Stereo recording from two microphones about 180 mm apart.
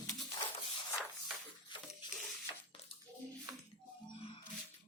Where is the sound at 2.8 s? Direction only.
35° left (ahead or behind).